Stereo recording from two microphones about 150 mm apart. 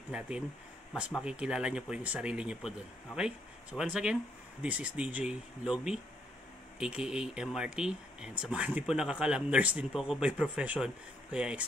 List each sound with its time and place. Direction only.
1.1 s speech: 5° right (ahead or behind)